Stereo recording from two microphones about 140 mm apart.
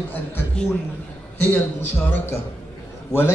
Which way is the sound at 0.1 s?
15° left (ahead or behind).